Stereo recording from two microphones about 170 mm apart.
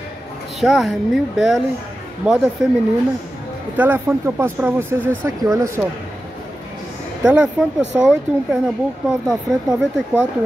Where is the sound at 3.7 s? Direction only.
10° right (ahead or behind).